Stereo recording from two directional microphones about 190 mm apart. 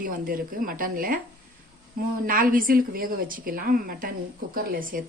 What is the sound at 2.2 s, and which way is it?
A woman's voice, 50° right (ahead or behind).